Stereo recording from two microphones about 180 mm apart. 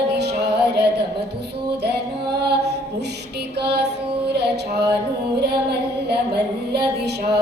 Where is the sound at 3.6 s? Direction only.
65° right (ahead or behind).